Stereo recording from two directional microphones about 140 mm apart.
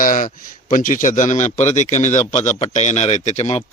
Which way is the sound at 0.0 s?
70° left (ahead or behind).